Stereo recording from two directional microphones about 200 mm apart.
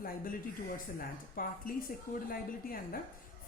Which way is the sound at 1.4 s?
45° left (ahead or behind).